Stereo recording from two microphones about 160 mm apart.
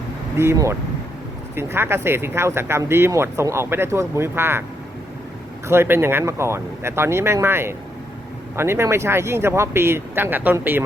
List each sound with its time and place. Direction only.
0.3 s speech: 20° right (ahead or behind)
5.6 s speech: 15° right (ahead or behind)